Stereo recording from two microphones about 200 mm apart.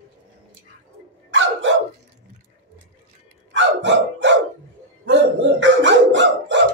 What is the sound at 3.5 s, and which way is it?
Dog, 65° right (ahead or behind).